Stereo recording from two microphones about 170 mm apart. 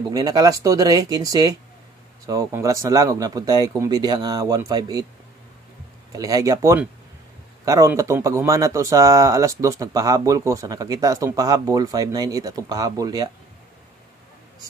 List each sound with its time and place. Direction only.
0.1 s speech: 20° right (ahead or behind)
6.1 s speech: 20° right (ahead or behind)